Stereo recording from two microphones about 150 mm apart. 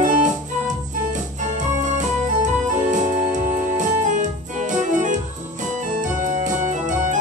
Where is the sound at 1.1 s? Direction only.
55° right (ahead or behind).